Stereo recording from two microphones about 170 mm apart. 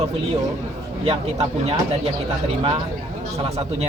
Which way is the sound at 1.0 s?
35° right (ahead or behind).